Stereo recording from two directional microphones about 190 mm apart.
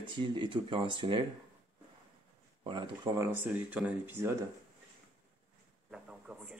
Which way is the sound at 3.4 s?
10° right (ahead or behind).